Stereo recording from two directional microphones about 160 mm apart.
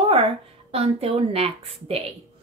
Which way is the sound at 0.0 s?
35° right (ahead or behind).